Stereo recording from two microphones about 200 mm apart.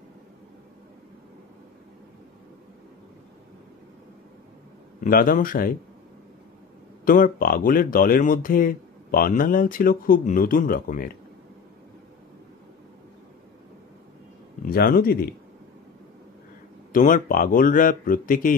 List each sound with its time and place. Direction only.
5.0 s speech: 45° left (ahead or behind)
7.1 s speech: 45° left (ahead or behind)
14.6 s speech: 45° left (ahead or behind)
16.9 s speech: 45° left (ahead or behind)